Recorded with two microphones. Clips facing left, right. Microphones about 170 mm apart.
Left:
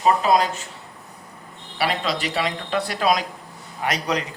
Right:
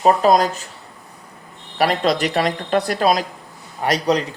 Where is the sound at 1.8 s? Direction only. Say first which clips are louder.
Right 6 dB; 45° right (ahead or behind).